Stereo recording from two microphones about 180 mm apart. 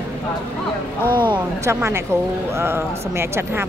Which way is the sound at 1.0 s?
10° left (ahead or behind).